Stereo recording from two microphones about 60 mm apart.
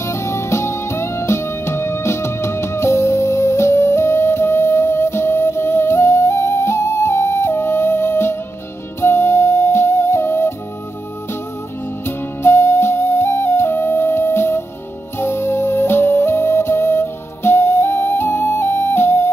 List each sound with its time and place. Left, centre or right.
0.0 s music: left
12.4 s music: left